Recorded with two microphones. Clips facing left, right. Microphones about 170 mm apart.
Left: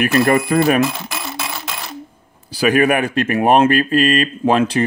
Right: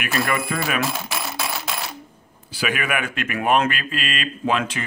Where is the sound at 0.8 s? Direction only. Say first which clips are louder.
Left 3 dB; centre (ahead or behind).